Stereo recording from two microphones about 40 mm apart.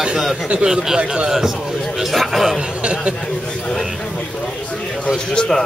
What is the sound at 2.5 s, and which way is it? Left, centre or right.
Speech, right.